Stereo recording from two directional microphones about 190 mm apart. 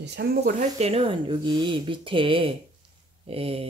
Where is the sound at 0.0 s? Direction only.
60° right (ahead or behind).